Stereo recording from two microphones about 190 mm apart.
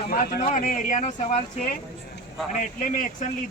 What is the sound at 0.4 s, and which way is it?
Speech, 40° left (ahead or behind).